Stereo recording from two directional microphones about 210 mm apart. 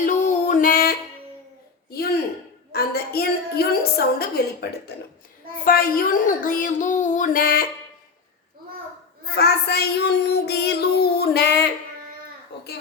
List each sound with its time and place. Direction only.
0.0 s music: 35° left (ahead or behind)
2.7 s a sound: 50° left (ahead or behind)
5.6 s speech: 45° left (ahead or behind)
9.3 s child singing: 50° left (ahead or behind)